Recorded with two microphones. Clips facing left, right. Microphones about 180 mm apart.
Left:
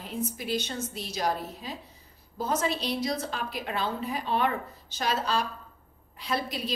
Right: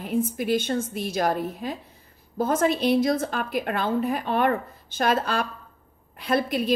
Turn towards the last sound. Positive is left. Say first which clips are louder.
# right 8 dB
turn(degrees=-55)  # may be behind; listen again after turning